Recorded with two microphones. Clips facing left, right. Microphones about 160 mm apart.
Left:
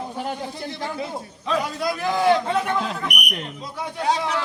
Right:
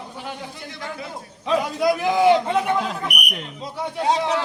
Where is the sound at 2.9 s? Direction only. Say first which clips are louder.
Even; 5° right (ahead or behind).